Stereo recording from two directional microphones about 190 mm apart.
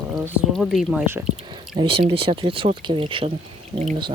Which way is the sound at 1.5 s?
25° right (ahead or behind).